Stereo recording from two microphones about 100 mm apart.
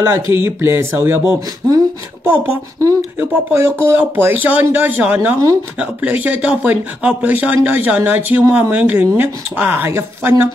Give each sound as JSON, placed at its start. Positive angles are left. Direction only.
{"t": 0.0, "sound": "speech", "side_deg": -25}
{"t": 2.2, "sound": "speech", "side_deg": -20}